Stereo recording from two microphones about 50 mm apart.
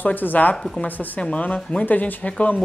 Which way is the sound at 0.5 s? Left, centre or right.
Centre.